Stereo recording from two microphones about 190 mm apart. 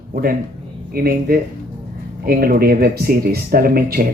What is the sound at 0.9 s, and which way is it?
Speech, 55° right (ahead or behind).